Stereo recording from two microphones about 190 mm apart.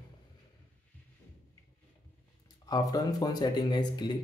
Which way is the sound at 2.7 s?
20° left (ahead or behind).